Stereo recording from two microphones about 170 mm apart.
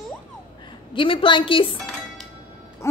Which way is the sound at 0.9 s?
30° left (ahead or behind).